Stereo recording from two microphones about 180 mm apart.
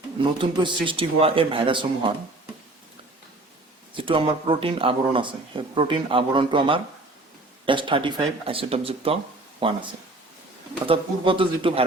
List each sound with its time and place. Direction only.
0.2 s speech: 25° right (ahead or behind)
3.9 s speech: 30° right (ahead or behind)